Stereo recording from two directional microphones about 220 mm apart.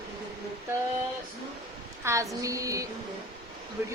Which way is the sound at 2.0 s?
15° right (ahead or behind).